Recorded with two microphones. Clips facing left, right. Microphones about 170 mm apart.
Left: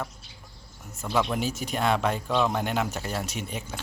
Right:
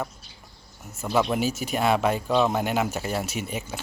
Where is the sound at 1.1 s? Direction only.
10° right (ahead or behind).